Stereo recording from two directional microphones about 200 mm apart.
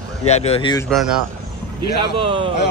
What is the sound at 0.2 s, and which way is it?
Speech, 30° left (ahead or behind).